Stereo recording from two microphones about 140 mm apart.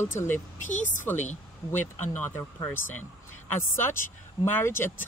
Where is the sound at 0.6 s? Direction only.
60° left (ahead or behind).